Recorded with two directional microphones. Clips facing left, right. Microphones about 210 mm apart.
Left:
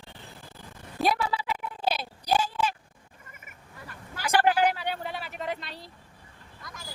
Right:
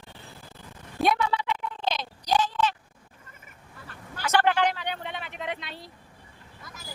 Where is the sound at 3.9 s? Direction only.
10° left (ahead or behind).